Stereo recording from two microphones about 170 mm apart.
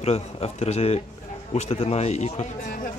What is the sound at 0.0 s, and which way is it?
Speech, 40° left (ahead or behind).